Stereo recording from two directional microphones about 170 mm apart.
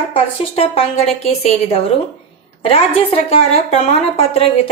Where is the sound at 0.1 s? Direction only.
35° left (ahead or behind).